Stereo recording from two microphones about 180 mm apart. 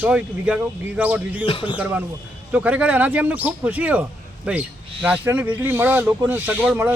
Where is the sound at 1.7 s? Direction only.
10° right (ahead or behind).